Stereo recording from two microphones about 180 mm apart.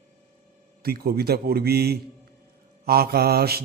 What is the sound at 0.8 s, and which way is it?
Mantra, 60° right (ahead or behind).